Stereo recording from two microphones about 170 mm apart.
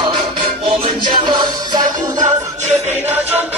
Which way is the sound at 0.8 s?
25° right (ahead or behind).